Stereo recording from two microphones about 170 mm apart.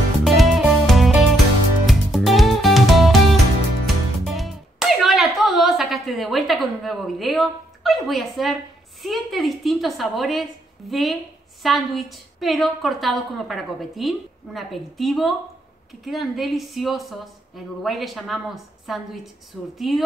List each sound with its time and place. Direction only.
0.2 s music: centre (ahead or behind)
9.0 s a woman's voice: centre (ahead or behind)